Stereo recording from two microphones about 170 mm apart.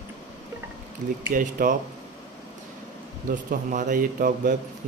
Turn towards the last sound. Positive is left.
turn(degrees=-50)  # may be behind; listen again after turning